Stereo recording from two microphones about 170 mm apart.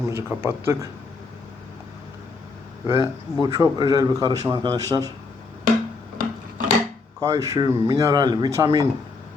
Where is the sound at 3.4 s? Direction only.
20° right (ahead or behind).